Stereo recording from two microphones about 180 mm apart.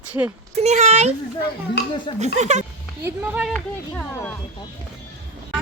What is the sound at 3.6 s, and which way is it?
Speech, 15° left (ahead or behind).